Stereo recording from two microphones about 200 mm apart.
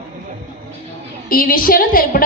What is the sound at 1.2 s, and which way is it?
A woman's voice, 45° left (ahead or behind).